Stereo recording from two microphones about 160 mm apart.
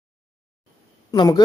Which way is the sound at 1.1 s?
25° left (ahead or behind).